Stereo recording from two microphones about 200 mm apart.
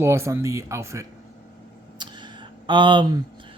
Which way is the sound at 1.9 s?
20° right (ahead or behind).